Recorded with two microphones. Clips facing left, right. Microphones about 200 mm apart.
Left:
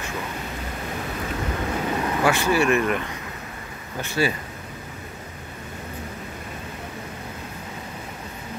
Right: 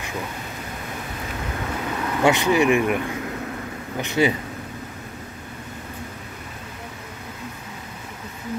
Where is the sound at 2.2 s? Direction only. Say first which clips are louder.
Right 3 dB; 20° right (ahead or behind).